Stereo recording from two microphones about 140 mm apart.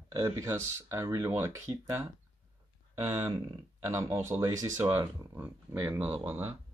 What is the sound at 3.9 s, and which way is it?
Speech, 20° right (ahead or behind).